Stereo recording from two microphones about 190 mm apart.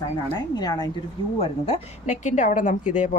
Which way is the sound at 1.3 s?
30° left (ahead or behind).